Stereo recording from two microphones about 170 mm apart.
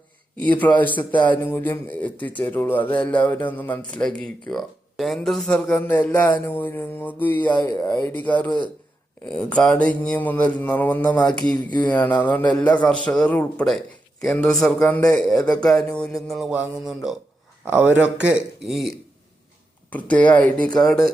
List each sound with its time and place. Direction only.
0.3 s speech: 10° left (ahead or behind)
7.6 s speech: 20° left (ahead or behind)
7.9 s a man's voice: 10° left (ahead or behind)